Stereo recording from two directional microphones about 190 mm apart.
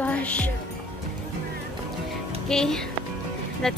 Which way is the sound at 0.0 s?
5° left (ahead or behind).